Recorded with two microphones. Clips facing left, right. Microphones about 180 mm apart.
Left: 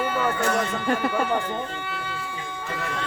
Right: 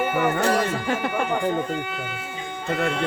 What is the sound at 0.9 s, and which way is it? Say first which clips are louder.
Speech: left 1 dB; centre (ahead or behind).